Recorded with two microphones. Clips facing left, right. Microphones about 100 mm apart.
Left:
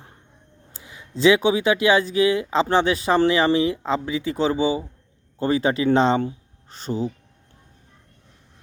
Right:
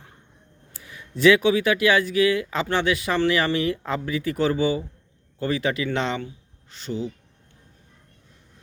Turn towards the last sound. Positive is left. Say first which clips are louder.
# left 3 dB
turn(degrees=40)  # may be behind; listen again after turning